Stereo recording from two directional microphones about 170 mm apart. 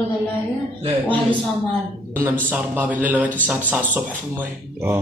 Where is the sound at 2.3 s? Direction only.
10° right (ahead or behind).